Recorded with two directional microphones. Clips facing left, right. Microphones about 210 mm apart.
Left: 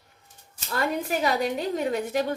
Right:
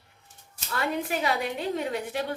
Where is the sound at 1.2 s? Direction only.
40° left (ahead or behind).